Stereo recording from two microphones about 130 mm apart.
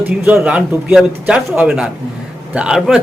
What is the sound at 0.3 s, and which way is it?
Speech, 10° right (ahead or behind).